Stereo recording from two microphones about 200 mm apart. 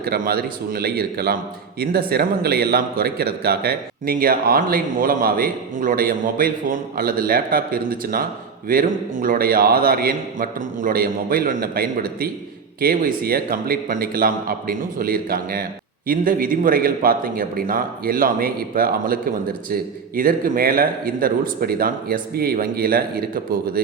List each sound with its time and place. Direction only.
0.0 s a man's voice: 50° right (ahead or behind)